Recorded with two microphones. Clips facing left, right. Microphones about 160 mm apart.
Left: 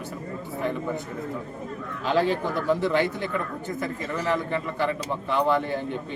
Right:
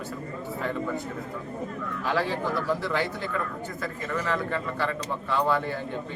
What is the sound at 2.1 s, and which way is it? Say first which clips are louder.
A man's voice: left 4 dB; 20° left (ahead or behind).